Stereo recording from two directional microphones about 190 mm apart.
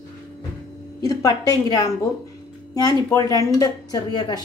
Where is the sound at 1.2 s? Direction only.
20° left (ahead or behind).